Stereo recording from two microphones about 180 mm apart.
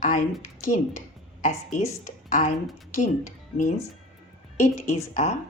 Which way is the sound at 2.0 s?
45° left (ahead or behind).